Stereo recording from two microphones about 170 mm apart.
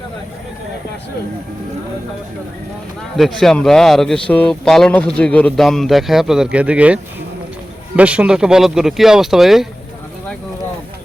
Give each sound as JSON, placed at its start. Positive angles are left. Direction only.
{"t": 3.2, "sound": "speech", "side_deg": 0}